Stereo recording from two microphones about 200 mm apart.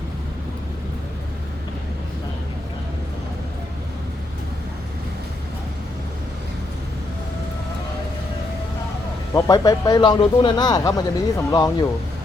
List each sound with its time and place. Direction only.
9.3 s speech: 20° left (ahead or behind)